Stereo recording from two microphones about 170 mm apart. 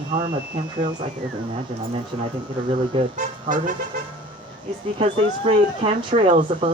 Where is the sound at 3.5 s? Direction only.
50° right (ahead or behind).